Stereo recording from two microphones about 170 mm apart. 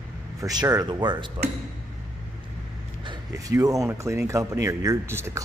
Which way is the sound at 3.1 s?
20° right (ahead or behind).